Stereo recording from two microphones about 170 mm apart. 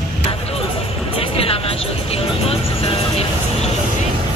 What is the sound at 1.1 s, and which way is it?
Music, 35° left (ahead or behind).